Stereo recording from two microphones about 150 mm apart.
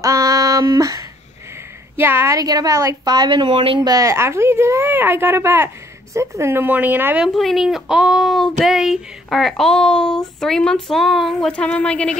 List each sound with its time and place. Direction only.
0.0 s female singing: 20° right (ahead or behind)
2.0 s a woman's voice: 15° right (ahead or behind)
7.3 s speech: centre (ahead or behind)